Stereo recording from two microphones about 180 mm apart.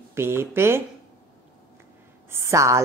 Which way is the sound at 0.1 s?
15° right (ahead or behind).